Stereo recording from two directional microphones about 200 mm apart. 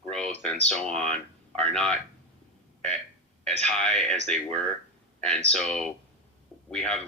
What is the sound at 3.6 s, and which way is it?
Speech, 5° left (ahead or behind).